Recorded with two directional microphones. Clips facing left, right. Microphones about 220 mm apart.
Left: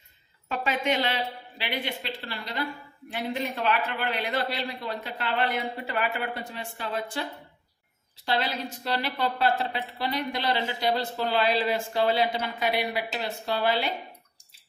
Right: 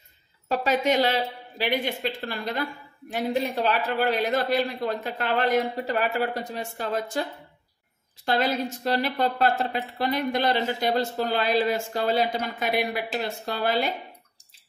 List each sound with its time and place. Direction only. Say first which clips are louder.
0.5 s a woman's voice: right 4 dB; 40° right (ahead or behind)
3.1 s speech: right 5 dB; 40° right (ahead or behind)
8.3 s a woman's voice: right 4 dB; 45° right (ahead or behind)